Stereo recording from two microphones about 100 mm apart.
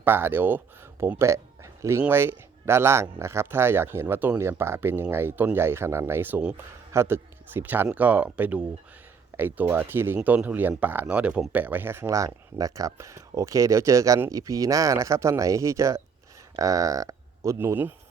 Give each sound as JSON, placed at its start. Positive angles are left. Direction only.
{"t": 0.0, "sound": "speech", "side_deg": -20}
{"t": 6.9, "sound": "speech", "side_deg": -25}